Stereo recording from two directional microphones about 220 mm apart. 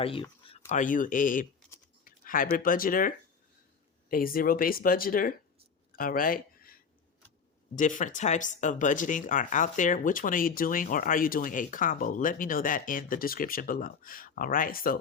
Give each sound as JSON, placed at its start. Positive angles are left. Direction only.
{"t": 0.0, "sound": "speech", "side_deg": 25}
{"t": 0.7, "sound": "speech", "side_deg": 35}
{"t": 4.1, "sound": "speech", "side_deg": 40}
{"t": 5.9, "sound": "a sound", "side_deg": 40}
{"t": 7.8, "sound": "speech", "side_deg": 35}